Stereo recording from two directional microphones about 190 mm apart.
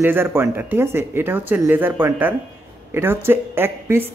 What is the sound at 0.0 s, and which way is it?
Speech, 10° right (ahead or behind).